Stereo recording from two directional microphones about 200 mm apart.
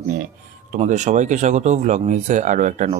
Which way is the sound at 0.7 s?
35° right (ahead or behind).